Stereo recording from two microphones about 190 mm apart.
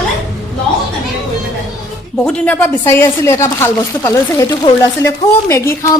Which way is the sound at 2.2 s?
5° left (ahead or behind).